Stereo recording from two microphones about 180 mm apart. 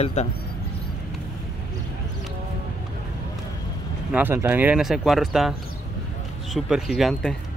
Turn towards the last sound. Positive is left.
turn(degrees=0)  # may be behind; listen again after turning